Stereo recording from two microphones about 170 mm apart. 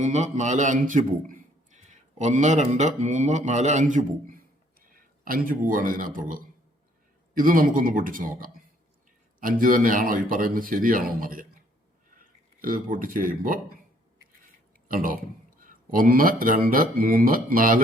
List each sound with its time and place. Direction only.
0.0 s a man's voice: 45° right (ahead or behind)
14.8 s speech: 55° right (ahead or behind)